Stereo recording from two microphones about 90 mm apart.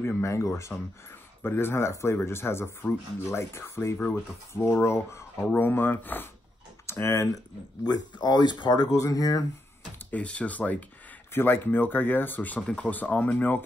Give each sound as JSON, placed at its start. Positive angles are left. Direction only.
{"t": 0.0, "sound": "speech", "side_deg": 30}
{"t": 7.8, "sound": "speech", "side_deg": 50}
{"t": 8.9, "sound": "speech", "side_deg": 40}
{"t": 10.1, "sound": "speech", "side_deg": 15}